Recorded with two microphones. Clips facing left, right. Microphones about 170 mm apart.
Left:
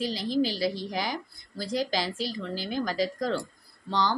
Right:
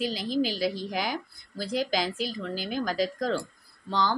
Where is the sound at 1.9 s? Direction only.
5° right (ahead or behind).